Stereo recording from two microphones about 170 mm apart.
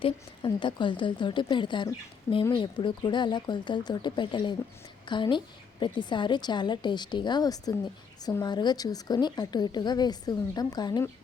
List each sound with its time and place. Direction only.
0.0 s a woman's voice: 30° left (ahead or behind)